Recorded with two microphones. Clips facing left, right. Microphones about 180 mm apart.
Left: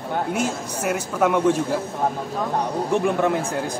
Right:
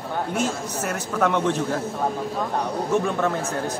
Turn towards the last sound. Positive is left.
turn(degrees=15)  # may be behind; listen again after turning